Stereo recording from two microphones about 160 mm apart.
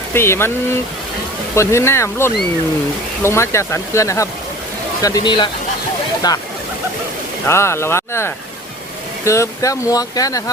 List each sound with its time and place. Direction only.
0.1 s speech: 15° left (ahead or behind)
7.4 s speech: 15° left (ahead or behind)